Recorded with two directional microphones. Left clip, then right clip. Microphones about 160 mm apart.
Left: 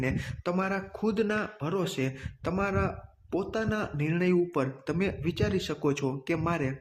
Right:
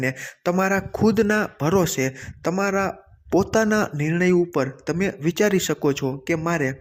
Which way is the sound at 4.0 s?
30° right (ahead or behind).